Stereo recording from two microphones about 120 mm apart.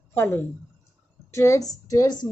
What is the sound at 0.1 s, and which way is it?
A woman's voice, 20° left (ahead or behind).